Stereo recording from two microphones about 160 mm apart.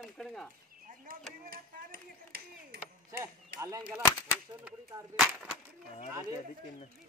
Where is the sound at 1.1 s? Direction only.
65° right (ahead or behind).